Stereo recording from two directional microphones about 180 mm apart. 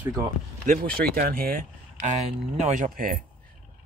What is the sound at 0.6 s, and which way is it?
Speech, 55° right (ahead or behind).